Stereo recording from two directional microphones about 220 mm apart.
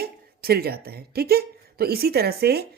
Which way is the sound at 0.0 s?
45° right (ahead or behind).